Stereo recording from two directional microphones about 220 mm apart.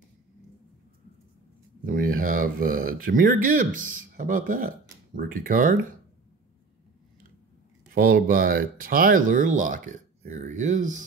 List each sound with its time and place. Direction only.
1.9 s speech: 40° right (ahead or behind)
7.9 s speech: 40° right (ahead or behind)